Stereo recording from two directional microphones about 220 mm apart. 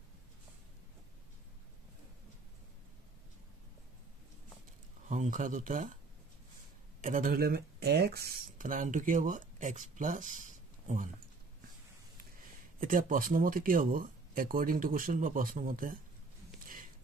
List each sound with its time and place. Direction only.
5.0 s speech: 35° right (ahead or behind)
7.0 s speech: 35° right (ahead or behind)
12.8 s speech: 40° right (ahead or behind)
16.6 s a sound: 40° right (ahead or behind)